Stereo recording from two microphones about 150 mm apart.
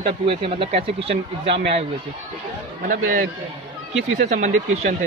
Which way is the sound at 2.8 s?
60° right (ahead or behind).